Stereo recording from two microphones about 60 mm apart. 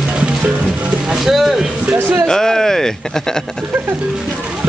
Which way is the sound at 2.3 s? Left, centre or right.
Centre.